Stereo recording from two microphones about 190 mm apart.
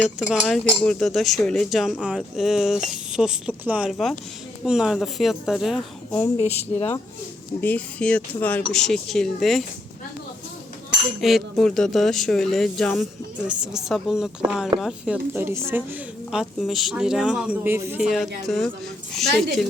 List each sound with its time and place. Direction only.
0.0 s a woman's voice: centre (ahead or behind)
6.3 s speech: 35° left (ahead or behind)
7.6 s a woman's voice: 10° left (ahead or behind)
11.2 s a woman's voice: centre (ahead or behind)
18.0 s a woman's voice: centre (ahead or behind)